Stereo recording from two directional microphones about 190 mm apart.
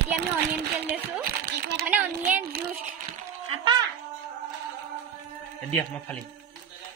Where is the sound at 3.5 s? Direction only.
25° right (ahead or behind).